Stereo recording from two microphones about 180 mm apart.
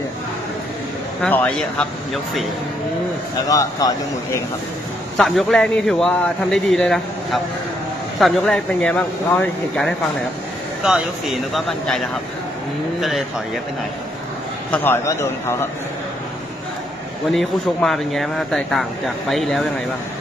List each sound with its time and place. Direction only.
1.2 s speech: 5° left (ahead or behind)
3.4 s a man's voice: 20° left (ahead or behind)
5.1 s speech: centre (ahead or behind)
14.7 s a man's voice: 10° left (ahead or behind)
17.3 s speech: centre (ahead or behind)